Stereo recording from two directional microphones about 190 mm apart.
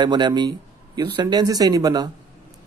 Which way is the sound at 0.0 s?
25° right (ahead or behind).